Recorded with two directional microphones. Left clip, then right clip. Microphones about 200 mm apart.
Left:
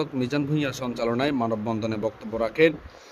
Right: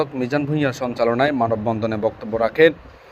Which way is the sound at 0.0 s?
5° right (ahead or behind).